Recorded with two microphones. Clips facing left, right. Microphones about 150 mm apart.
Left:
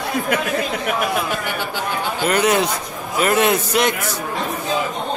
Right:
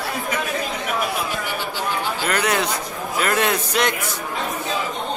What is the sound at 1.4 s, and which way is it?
Chatter, 55° left (ahead or behind).